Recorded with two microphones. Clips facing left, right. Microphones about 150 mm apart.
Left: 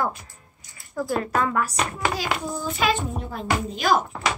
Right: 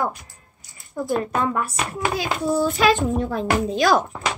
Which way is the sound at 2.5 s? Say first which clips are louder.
Right 7 dB; 80° right.